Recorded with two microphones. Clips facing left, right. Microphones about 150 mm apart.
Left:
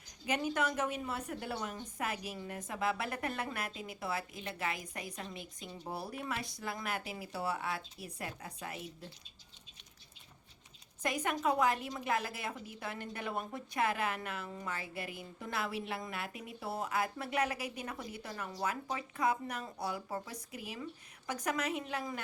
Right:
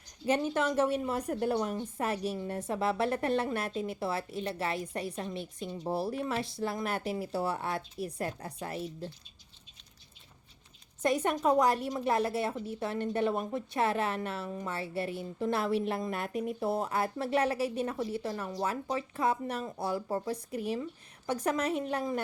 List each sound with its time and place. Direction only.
0.3 s speech: 30° right (ahead or behind)
1.7 s speech: 30° right (ahead or behind)
11.0 s speech: 35° right (ahead or behind)